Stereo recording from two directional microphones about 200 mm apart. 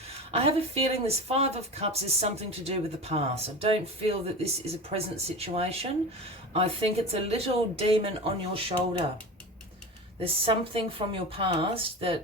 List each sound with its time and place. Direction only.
0.3 s speech: 30° right (ahead or behind)
10.2 s speech: 25° right (ahead or behind)